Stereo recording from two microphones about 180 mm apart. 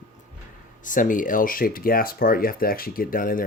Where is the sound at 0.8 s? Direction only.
45° left (ahead or behind).